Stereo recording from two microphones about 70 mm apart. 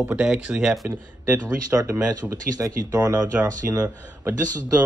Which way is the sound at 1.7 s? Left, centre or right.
Right.